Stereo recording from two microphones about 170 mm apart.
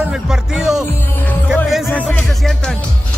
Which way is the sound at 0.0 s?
5° right (ahead or behind).